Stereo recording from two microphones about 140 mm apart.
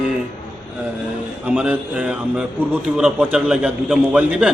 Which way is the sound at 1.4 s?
10° right (ahead or behind).